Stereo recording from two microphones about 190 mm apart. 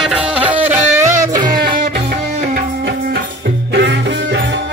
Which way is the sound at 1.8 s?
45° right (ahead or behind).